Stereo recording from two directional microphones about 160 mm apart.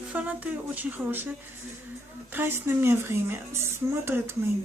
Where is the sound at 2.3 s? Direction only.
15° right (ahead or behind).